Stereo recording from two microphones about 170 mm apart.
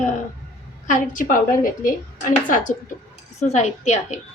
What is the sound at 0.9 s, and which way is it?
A woman's voice, 50° left (ahead or behind).